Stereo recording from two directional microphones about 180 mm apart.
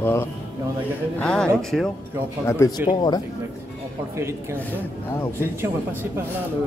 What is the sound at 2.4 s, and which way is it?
Speech, 15° left (ahead or behind).